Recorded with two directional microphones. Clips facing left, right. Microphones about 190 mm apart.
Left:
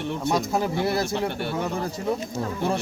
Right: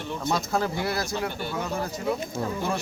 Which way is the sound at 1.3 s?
65° left (ahead or behind).